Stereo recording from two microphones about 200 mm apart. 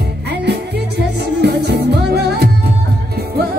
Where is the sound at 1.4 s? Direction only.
55° right (ahead or behind).